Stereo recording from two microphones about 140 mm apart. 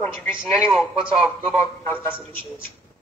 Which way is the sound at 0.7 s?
Centre (ahead or behind).